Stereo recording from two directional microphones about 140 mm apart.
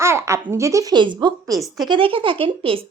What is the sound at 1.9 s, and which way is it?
Speech, 40° right (ahead or behind).